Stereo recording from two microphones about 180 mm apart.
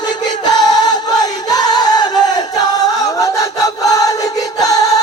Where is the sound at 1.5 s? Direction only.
20° left (ahead or behind).